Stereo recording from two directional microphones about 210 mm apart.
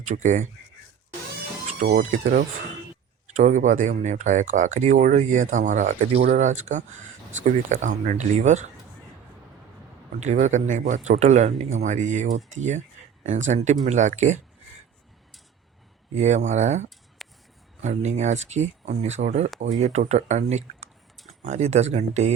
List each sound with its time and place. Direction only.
0.0 s speech: 35° right (ahead or behind)
1.6 s speech: 35° right (ahead or behind)
10.2 s speech: 30° right (ahead or behind)
16.1 s speech: 35° right (ahead or behind)
17.2 s a sound: centre (ahead or behind)
17.8 s speech: 35° right (ahead or behind)